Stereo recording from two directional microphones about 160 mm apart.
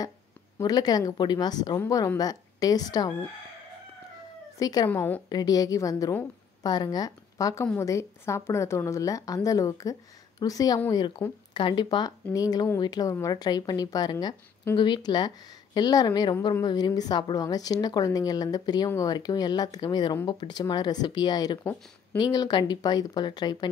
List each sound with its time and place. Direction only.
0.6 s speech: 25° left (ahead or behind)
4.6 s speech: 25° left (ahead or behind)
4.8 s a woman's voice: 15° left (ahead or behind)
5.3 s a woman's voice: 25° left (ahead or behind)